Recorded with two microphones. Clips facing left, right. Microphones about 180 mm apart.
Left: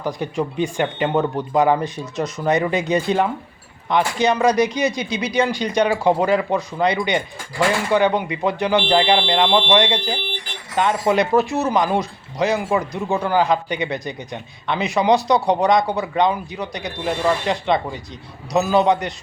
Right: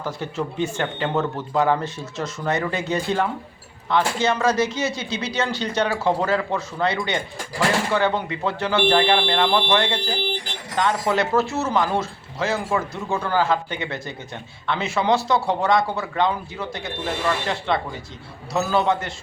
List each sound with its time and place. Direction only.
0.0 s speech: 15° left (ahead or behind)